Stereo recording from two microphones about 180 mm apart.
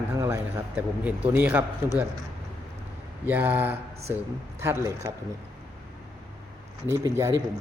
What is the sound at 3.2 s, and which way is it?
A man's voice, 10° right (ahead or behind).